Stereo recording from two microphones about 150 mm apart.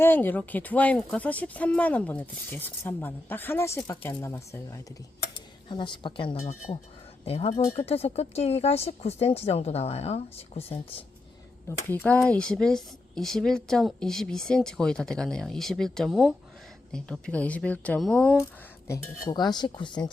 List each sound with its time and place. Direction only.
0.0 s speech: 15° left (ahead or behind)
5.6 s speech: 30° left (ahead or behind)
11.7 s a woman's voice: 10° left (ahead or behind)
19.3 s speech: 30° left (ahead or behind)